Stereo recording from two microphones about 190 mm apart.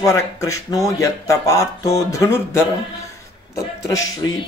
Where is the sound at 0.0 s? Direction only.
15° left (ahead or behind).